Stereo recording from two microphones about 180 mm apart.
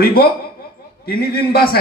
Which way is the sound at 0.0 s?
60° left (ahead or behind).